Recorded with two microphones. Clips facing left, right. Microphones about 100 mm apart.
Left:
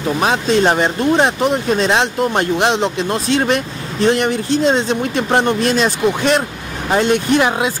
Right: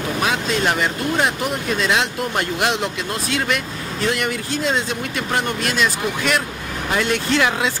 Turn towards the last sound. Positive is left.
turn(degrees=20)  # may be behind; listen again after turning